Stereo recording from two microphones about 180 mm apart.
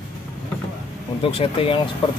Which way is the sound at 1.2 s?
30° left (ahead or behind).